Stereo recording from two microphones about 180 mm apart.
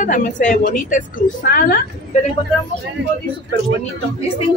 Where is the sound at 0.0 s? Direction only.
45° left (ahead or behind).